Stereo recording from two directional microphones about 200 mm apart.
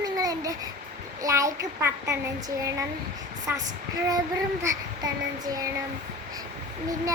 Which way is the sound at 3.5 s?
10° right (ahead or behind).